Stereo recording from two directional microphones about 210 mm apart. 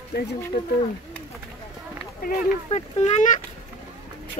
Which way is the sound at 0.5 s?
40° left (ahead or behind).